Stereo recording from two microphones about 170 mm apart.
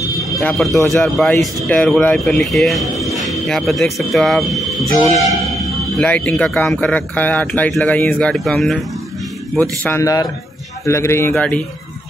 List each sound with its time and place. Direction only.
0.2 s speech: 5° left (ahead or behind)
9.6 s speech: 15° left (ahead or behind)